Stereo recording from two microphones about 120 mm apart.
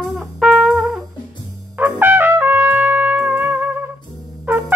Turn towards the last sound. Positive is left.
turn(degrees=-15)  # may be behind; listen again after turning